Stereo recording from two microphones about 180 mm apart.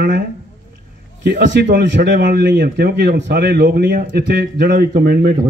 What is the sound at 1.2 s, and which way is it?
Speech, 70° right (ahead or behind).